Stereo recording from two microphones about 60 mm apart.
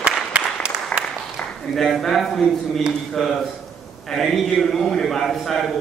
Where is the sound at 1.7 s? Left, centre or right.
Centre.